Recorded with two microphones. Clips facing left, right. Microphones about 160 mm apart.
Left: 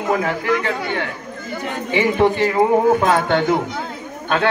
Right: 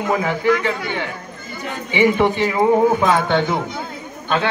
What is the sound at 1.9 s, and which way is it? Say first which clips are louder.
A man's voice: even; 45° left (ahead or behind).